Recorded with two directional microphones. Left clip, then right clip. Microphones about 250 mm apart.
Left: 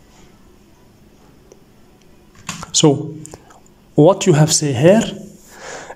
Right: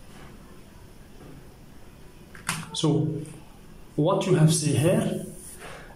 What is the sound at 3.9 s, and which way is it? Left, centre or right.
Speech, left.